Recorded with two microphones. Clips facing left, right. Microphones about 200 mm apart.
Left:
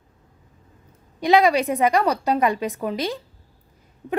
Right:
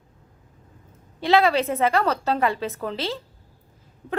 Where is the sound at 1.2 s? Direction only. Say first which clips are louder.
Left 2 dB; 15° left (ahead or behind).